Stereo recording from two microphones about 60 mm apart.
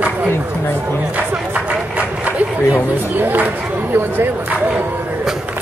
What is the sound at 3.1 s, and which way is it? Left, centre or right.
Speech, right.